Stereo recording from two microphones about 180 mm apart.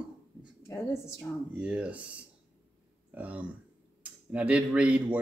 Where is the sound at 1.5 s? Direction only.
5° right (ahead or behind).